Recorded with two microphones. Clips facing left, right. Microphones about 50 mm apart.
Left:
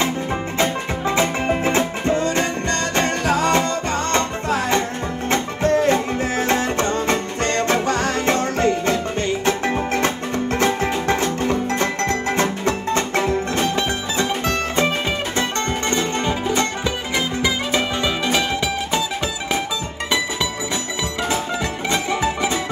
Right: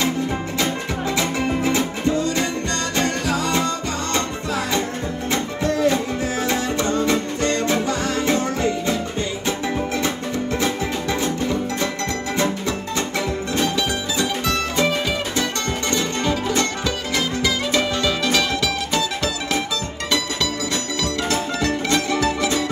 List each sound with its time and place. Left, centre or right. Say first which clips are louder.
0.6 s music: left 4 dB; left
21.8 s music: left 1 dB; centre